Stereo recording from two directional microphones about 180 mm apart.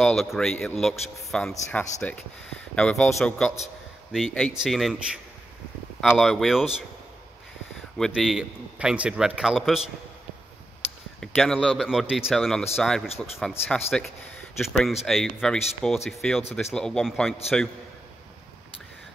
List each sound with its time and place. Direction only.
0.0 s a man's voice: centre (ahead or behind)
4.1 s a man's voice: 5° left (ahead or behind)
7.7 s a man's voice: centre (ahead or behind)
11.1 s a man's voice: 5° left (ahead or behind)